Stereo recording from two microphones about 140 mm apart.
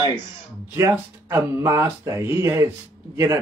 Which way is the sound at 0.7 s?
20° right (ahead or behind).